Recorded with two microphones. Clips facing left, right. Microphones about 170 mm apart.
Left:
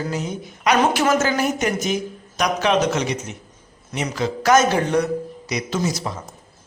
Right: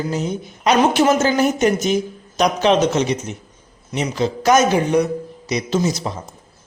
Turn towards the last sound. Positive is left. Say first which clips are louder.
# right 4 dB
turn(degrees=-25)  # may be behind; listen again after turning